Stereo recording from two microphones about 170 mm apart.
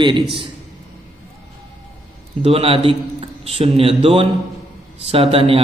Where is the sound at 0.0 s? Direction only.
30° right (ahead or behind).